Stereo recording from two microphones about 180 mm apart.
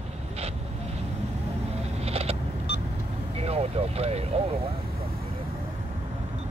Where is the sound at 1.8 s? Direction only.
35° right (ahead or behind).